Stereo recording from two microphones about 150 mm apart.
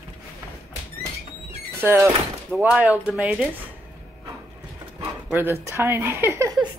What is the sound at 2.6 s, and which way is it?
Speech, 5° right (ahead or behind).